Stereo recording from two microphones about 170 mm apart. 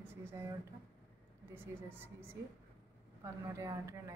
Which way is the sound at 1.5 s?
15° right (ahead or behind).